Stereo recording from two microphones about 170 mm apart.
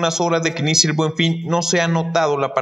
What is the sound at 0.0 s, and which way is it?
Speech, centre (ahead or behind).